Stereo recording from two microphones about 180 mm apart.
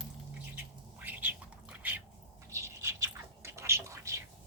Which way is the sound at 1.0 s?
10° right (ahead or behind).